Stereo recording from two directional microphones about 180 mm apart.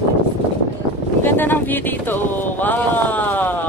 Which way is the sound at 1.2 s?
10° left (ahead or behind).